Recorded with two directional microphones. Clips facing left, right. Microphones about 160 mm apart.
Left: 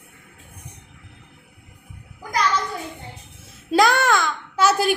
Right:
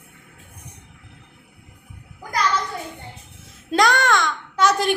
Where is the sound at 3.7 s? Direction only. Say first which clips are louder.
Left 1 dB; 5° left (ahead or behind).